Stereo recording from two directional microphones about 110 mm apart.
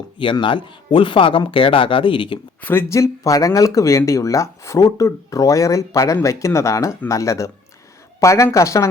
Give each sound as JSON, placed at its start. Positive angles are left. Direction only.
{"t": 0.2, "sound": "speech", "side_deg": 50}
{"t": 2.6, "sound": "speech", "side_deg": 20}